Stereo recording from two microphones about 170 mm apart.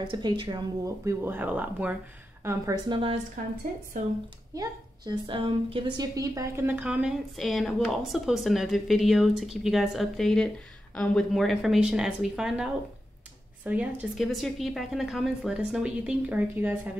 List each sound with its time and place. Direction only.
0.1 s speech: 25° right (ahead or behind)
2.9 s a woman's voice: 30° right (ahead or behind)
4.6 s a woman's voice: 25° right (ahead or behind)